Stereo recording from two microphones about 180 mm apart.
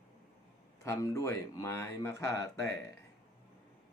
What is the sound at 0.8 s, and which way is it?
Speech, 15° left (ahead or behind).